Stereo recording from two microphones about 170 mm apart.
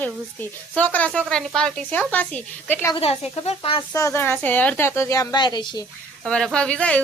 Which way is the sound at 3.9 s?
15° left (ahead or behind).